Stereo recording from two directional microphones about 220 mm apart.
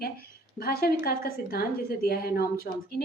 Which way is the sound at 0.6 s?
45° left (ahead or behind).